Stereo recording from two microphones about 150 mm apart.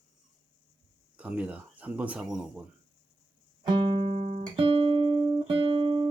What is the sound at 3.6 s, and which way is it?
Music, 30° right (ahead or behind).